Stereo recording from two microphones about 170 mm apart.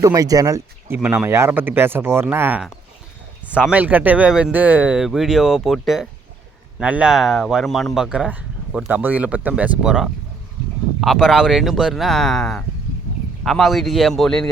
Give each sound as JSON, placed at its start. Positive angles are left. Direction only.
{"t": 0.0, "sound": "speech", "side_deg": -20}